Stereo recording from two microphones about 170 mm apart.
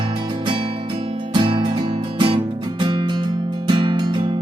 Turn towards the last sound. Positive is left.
turn(degrees=-25)  # may be behind; listen again after turning